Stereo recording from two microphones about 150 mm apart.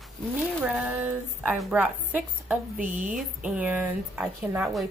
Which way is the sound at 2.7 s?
60° right (ahead or behind).